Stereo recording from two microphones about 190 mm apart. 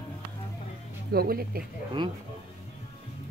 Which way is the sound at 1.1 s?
55° right (ahead or behind).